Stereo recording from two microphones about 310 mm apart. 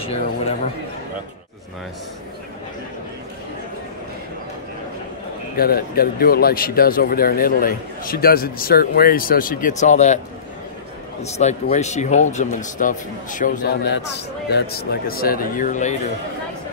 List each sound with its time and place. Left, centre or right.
5.6 s speech: left
11.2 s speech: left